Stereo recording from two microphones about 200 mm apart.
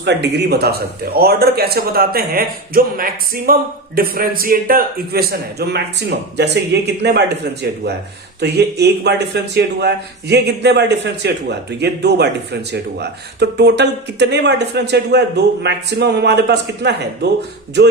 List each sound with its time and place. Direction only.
0.0 s speech: 60° right (ahead or behind)